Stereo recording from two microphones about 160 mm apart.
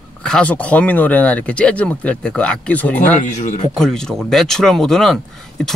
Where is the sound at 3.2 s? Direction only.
50° left (ahead or behind).